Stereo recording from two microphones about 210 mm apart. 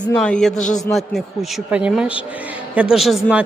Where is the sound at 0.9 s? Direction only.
Centre (ahead or behind).